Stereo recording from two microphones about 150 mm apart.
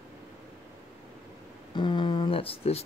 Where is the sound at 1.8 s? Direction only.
30° left (ahead or behind).